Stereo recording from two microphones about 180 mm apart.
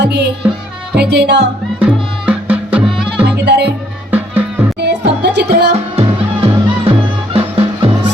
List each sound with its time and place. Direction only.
0.0 s music: 70° right (ahead or behind)
1.8 s music: 5° right (ahead or behind)
3.2 s music: 65° right (ahead or behind)
4.8 s music: 65° right (ahead or behind)
5.7 s music: 35° right (ahead or behind)